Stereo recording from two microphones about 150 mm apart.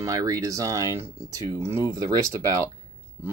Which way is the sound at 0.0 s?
20° right (ahead or behind).